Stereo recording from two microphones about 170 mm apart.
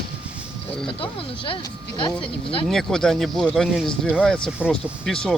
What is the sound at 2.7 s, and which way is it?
Speech, 5° left (ahead or behind).